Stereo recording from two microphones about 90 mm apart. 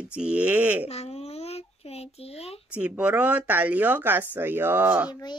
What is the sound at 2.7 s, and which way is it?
Speech, 15° right (ahead or behind).